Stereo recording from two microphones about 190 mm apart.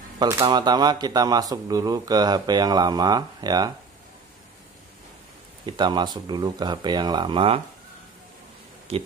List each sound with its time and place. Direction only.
0.2 s speech: 20° right (ahead or behind)
5.7 s speech: 25° right (ahead or behind)
8.9 s speech: 30° right (ahead or behind)